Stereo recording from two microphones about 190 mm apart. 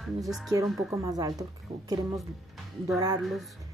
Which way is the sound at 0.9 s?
20° right (ahead or behind).